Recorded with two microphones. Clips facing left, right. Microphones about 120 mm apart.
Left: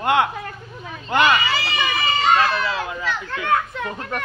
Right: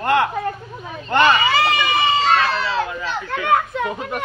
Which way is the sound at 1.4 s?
50° right (ahead or behind).